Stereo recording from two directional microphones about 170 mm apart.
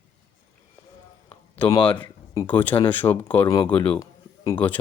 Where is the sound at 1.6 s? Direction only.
25° left (ahead or behind).